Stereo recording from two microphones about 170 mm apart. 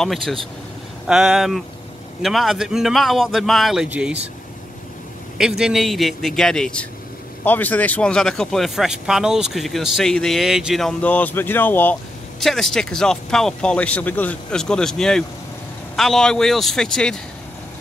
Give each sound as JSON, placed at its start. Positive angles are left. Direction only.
{"t": 0.0, "sound": "speech", "side_deg": 0}
{"t": 5.4, "sound": "speech", "side_deg": -5}